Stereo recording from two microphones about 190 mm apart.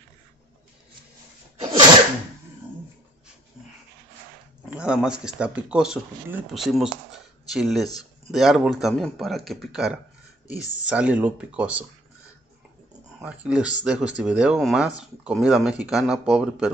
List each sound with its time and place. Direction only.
4.6 s speech: 5° right (ahead or behind)
13.2 s speech: 5° right (ahead or behind)